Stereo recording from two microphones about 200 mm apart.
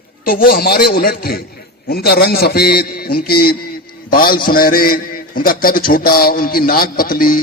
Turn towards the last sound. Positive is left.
turn(degrees=45)  # may be behind; listen again after turning